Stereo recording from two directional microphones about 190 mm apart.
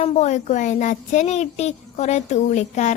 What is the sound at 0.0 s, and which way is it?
Speech, 35° left (ahead or behind).